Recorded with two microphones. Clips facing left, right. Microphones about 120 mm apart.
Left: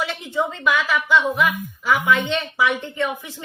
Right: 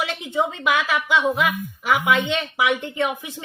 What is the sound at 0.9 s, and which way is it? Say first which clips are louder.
Speech: left 1 dB; 20° right (ahead or behind).